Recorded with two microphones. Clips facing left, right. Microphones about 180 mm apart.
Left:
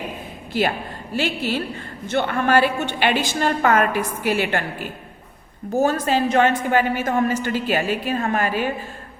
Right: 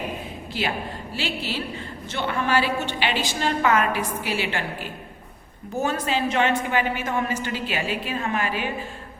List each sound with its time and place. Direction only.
1.1 s a woman's voice: 50° left (ahead or behind)